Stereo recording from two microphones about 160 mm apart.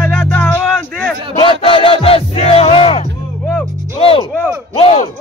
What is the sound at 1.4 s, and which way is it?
A man's voice, 35° left (ahead or behind).